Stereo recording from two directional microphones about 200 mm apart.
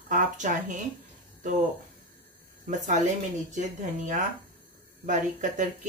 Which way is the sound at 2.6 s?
40° right (ahead or behind).